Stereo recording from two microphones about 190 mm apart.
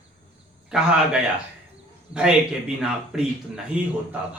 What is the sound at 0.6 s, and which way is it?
Speech, 5° right (ahead or behind).